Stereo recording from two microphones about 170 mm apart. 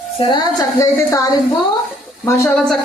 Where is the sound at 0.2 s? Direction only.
25° left (ahead or behind).